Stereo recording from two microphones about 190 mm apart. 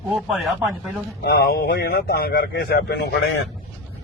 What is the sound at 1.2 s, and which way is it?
A man's voice, 55° left (ahead or behind).